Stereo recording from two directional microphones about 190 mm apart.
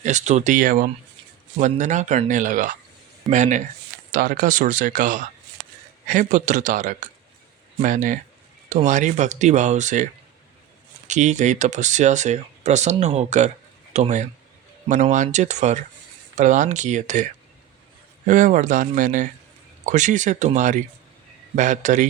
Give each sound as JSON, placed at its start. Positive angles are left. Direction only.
{"t": 0.0, "sound": "speech", "side_deg": -40}
{"t": 11.1, "sound": "speech", "side_deg": -40}
{"t": 18.3, "sound": "speech", "side_deg": -40}